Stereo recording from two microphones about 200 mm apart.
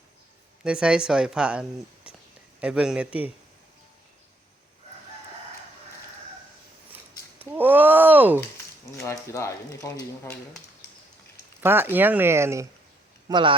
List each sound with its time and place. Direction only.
0.6 s speech: 5° right (ahead or behind)
2.1 s a sound: 5° right (ahead or behind)
2.6 s speech: 5° right (ahead or behind)
7.3 s a sound: 10° right (ahead or behind)
9.0 s speech: 15° left (ahead or behind)
11.6 s speech: 10° right (ahead or behind)
13.2 s speech: 25° right (ahead or behind)